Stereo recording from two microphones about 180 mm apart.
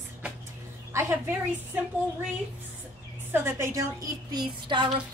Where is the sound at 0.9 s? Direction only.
15° right (ahead or behind).